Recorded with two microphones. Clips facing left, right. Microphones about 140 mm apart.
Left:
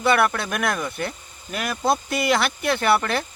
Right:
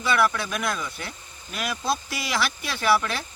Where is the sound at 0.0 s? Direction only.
60° left (ahead or behind).